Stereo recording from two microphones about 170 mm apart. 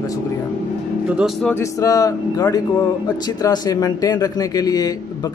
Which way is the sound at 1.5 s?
20° left (ahead or behind).